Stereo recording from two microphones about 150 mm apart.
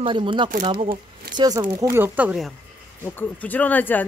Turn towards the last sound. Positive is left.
turn(degrees=10)  # may be behind; listen again after turning